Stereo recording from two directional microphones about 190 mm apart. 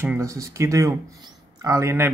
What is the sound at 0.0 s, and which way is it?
Speech, 15° right (ahead or behind).